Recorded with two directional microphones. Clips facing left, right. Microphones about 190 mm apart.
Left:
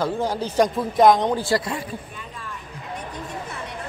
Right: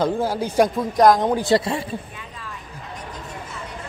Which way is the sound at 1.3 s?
20° right (ahead or behind).